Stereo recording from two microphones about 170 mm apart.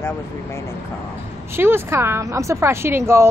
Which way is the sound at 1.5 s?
15° right (ahead or behind).